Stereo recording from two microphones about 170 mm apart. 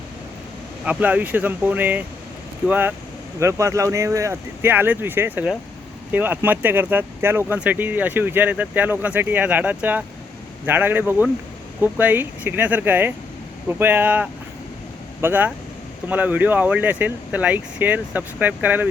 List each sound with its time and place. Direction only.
0.9 s speech: 10° right (ahead or behind)